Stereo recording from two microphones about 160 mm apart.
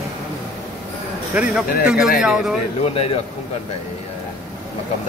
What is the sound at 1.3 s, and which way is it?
Speech, 10° right (ahead or behind).